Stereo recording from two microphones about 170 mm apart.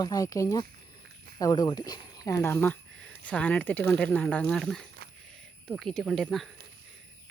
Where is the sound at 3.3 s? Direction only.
10° left (ahead or behind).